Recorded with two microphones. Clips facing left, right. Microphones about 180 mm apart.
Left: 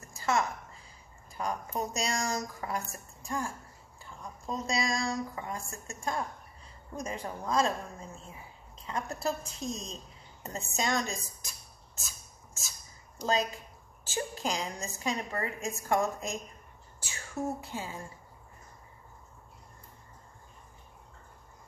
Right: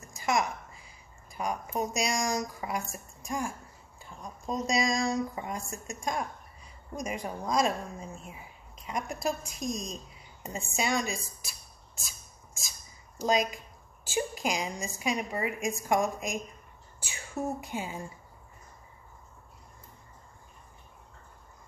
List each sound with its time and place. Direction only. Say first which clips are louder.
0.1 s a woman's voice: right 1 dB; 15° right (ahead or behind)
10.4 s a sound: right 1 dB; 10° right (ahead or behind)
13.2 s a woman's voice: right 3 dB; 15° right (ahead or behind)